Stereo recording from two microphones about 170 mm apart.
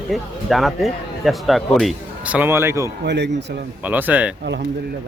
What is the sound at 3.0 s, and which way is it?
Speech, 90° right.